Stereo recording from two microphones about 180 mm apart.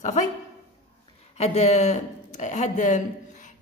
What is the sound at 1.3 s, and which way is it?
Speech, 40° left (ahead or behind).